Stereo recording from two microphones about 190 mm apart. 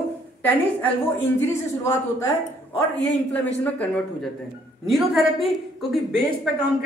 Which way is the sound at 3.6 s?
5° left (ahead or behind).